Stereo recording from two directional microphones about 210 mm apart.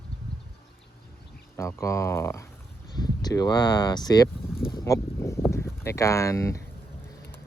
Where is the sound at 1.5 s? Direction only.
15° left (ahead or behind).